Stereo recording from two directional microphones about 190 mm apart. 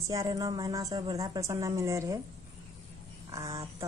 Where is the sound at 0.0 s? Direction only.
15° right (ahead or behind).